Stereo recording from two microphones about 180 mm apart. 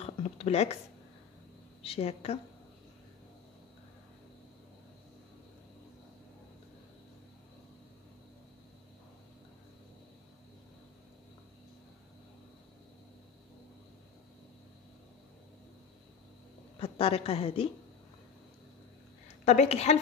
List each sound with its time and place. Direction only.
0.0 s a sound: 35° left (ahead or behind)
1.8 s a woman's voice: 35° left (ahead or behind)
16.8 s a woman's voice: 30° left (ahead or behind)
19.2 s a woman's voice: 40° left (ahead or behind)